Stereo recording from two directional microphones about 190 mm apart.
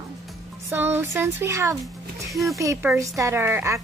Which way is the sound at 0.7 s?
10° right (ahead or behind).